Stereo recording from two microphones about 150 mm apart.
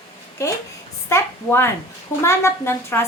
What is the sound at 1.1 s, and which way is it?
A woman's voice, 15° left (ahead or behind).